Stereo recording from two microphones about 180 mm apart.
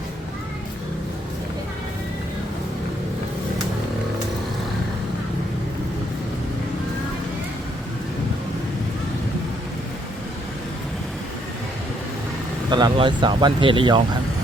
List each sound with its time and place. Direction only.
12.7 s speech: 25° right (ahead or behind)